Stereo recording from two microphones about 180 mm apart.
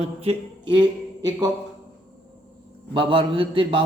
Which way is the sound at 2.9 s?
30° right (ahead or behind).